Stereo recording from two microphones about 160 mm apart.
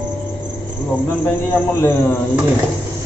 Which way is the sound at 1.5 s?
15° left (ahead or behind).